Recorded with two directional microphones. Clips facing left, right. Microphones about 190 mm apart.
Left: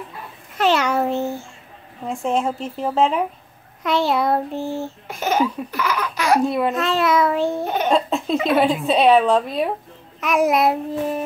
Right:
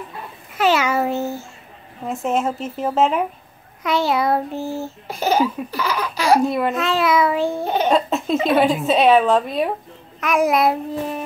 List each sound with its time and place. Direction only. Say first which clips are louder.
0.6 s babbling: even; 5° right (ahead or behind)
2.0 s a woman's voice: even; 5° right (ahead or behind)
5.0 s a sound: right 2 dB; 35° right (ahead or behind)
6.4 s a woman's voice: even; centre (ahead or behind)
7.6 s a child's voice: right 2 dB; 30° right (ahead or behind)
7.9 s a sound: left 1 dB; centre (ahead or behind)
8.5 s a woman's voice: right 1 dB; centre (ahead or behind)